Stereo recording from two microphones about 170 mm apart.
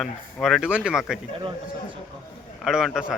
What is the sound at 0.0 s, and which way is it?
Speech, centre (ahead or behind).